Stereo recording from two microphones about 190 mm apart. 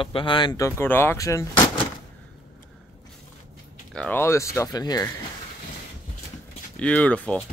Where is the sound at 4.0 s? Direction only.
10° left (ahead or behind).